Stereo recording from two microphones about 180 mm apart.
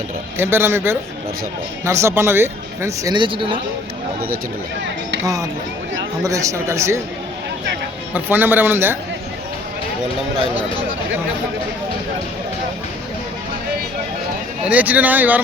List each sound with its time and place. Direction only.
0.3 s speech: 15° right (ahead or behind); by 3.6 s 30° right (ahead or behind)
5.2 s speech: 20° right (ahead or behind)
8.1 s speech: 10° right (ahead or behind)
14.6 s speech: 10° right (ahead or behind)